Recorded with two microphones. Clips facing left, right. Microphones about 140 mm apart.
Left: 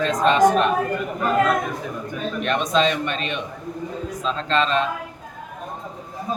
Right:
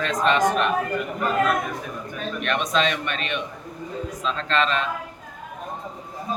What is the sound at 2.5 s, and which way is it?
Speech, 35° left (ahead or behind).